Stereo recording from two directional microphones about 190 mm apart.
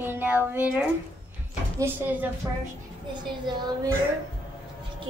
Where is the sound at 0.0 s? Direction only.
10° right (ahead or behind).